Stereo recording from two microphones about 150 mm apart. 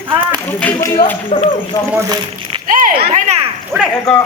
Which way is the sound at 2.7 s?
65° right (ahead or behind).